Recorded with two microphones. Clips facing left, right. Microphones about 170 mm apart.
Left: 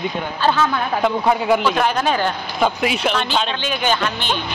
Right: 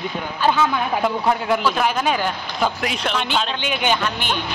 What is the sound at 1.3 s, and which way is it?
Speech, 5° left (ahead or behind).